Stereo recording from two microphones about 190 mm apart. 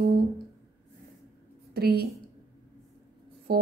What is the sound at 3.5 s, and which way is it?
Music, 55° right (ahead or behind).